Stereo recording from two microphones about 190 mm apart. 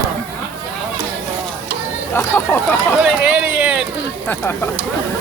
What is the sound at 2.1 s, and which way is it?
Speech, 10° left (ahead or behind).